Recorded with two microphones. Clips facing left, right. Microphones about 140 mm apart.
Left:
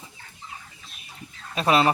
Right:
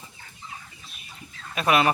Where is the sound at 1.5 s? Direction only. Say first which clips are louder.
Left 1 dB; 30° left (ahead or behind).